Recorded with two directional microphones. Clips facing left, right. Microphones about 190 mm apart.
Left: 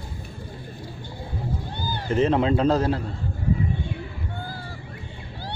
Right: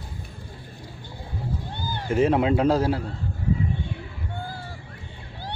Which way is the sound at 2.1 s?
10° right (ahead or behind).